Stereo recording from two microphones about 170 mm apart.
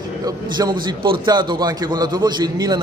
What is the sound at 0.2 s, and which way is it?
A man's voice, 25° right (ahead or behind).